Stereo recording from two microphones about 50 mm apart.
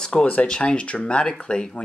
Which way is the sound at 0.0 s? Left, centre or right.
Centre.